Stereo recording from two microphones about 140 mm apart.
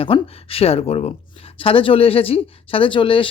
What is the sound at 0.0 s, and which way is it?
Speech, 40° left (ahead or behind).